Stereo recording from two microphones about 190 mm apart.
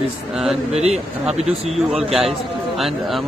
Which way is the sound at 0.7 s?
35° right (ahead or behind).